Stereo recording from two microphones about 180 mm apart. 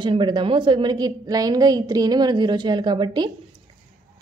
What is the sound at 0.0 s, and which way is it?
A woman's voice, 25° right (ahead or behind).